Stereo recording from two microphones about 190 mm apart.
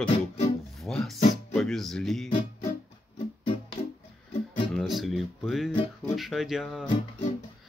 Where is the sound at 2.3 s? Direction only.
35° left (ahead or behind).